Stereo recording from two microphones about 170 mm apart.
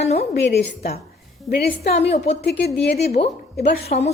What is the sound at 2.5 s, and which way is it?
Speech, 70° left (ahead or behind).